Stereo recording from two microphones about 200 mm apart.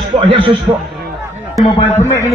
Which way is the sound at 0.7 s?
15° right (ahead or behind).